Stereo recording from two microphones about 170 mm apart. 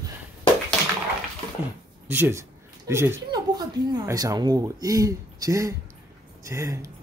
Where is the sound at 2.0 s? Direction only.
10° right (ahead or behind).